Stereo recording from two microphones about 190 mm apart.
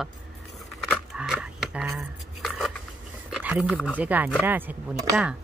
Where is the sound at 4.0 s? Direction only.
10° right (ahead or behind).